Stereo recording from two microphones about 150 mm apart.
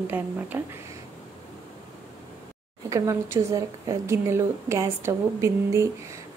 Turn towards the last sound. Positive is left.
turn(degrees=-20)  # may be behind; listen again after turning